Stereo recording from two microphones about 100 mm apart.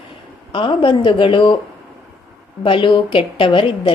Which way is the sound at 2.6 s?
60° left (ahead or behind).